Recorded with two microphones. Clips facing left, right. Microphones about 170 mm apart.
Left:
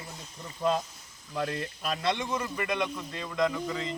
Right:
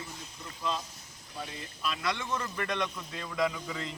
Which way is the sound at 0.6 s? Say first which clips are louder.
Left 7 dB; 50° left (ahead or behind).